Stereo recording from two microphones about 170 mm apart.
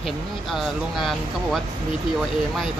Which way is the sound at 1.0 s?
Centre (ahead or behind).